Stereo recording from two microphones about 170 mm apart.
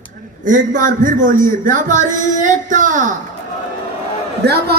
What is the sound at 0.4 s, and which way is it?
Speech, 50° right (ahead or behind).